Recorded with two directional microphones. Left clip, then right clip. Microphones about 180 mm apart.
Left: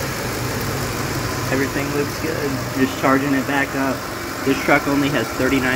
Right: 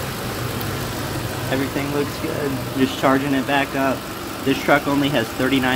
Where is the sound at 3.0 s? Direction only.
10° right (ahead or behind).